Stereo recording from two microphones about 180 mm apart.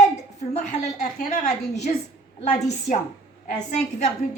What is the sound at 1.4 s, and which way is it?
Speech, 40° left (ahead or behind).